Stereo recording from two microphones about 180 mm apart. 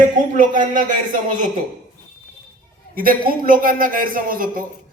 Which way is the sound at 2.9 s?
55° right (ahead or behind).